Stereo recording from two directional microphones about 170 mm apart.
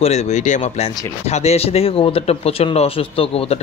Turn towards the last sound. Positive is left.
turn(degrees=35)  # may be behind; listen again after turning